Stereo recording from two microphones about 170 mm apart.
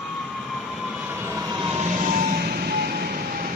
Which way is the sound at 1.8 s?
40° right (ahead or behind).